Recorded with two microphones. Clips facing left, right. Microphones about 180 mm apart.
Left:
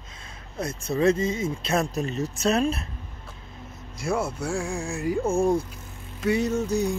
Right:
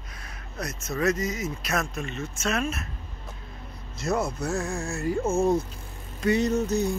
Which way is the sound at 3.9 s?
10° left (ahead or behind).